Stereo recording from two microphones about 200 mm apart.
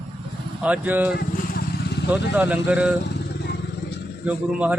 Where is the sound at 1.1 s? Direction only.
50° left (ahead or behind).